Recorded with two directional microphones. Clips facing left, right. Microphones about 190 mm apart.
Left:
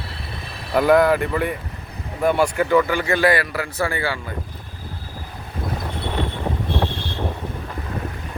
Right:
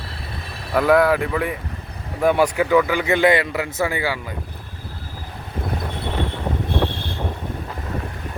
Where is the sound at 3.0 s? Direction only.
20° right (ahead or behind).